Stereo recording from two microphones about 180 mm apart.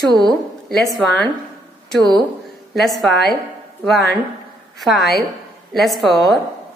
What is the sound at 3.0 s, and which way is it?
Speech, centre (ahead or behind).